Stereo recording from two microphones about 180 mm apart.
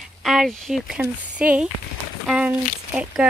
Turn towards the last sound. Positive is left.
turn(degrees=-5)  # may be behind; listen again after turning